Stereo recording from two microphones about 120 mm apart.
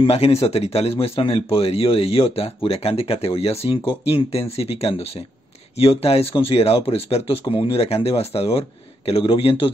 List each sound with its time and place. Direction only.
0.1 s speech: 60° left (ahead or behind)